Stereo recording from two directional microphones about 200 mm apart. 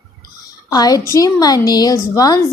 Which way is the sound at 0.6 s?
20° left (ahead or behind).